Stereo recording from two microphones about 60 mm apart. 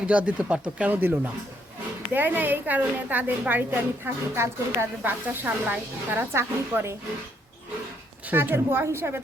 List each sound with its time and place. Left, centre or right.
0.0 s speech: right
0.9 s a woman's voice: right
8.3 s a woman's voice: right